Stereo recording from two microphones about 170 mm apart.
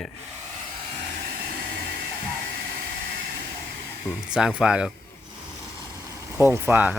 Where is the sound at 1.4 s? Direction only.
70° right (ahead or behind).